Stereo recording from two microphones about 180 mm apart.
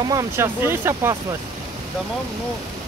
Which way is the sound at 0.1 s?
15° right (ahead or behind).